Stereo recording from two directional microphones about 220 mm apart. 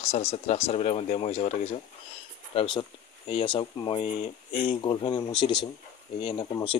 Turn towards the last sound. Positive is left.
turn(degrees=20)  # may be behind; listen again after turning